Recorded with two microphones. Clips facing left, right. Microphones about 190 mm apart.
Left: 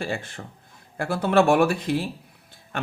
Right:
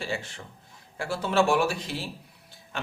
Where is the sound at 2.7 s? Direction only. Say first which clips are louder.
Left 5 dB; 55° left (ahead or behind).